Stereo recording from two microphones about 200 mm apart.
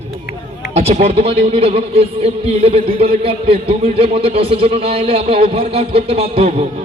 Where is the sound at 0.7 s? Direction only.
30° right (ahead or behind).